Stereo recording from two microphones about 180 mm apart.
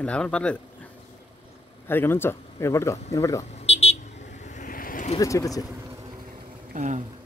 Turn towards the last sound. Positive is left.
turn(degrees=-45)  # may be behind; listen again after turning